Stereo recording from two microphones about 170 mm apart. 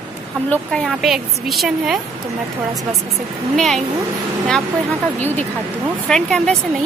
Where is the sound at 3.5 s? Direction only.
Centre (ahead or behind).